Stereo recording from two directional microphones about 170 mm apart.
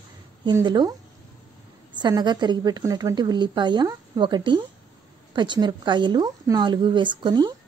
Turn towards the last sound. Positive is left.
turn(degrees=-25)  # may be behind; listen again after turning